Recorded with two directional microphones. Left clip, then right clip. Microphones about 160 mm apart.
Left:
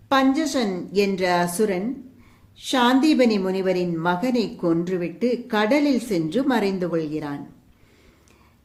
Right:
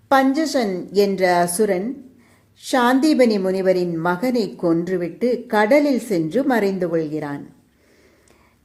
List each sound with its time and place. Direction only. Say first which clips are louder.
0.1 s a woman's voice: right 3 dB; 25° right (ahead or behind)